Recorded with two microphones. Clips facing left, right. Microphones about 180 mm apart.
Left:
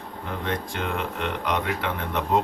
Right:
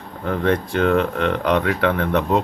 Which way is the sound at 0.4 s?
70° right (ahead or behind).